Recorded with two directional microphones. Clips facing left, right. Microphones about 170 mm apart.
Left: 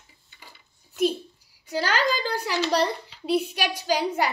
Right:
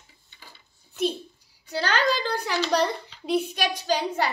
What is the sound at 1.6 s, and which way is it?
A child's voice, 10° left (ahead or behind).